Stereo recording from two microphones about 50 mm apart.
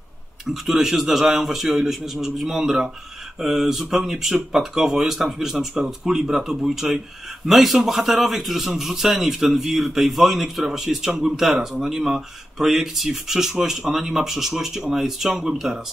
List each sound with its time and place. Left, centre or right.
0.5 s a man's voice: centre